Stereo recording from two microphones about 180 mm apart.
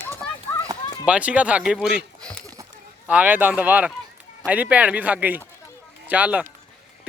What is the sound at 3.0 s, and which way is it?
Speech, 10° right (ahead or behind).